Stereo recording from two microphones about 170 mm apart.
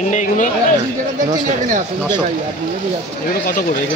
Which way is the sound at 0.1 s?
45° left (ahead or behind).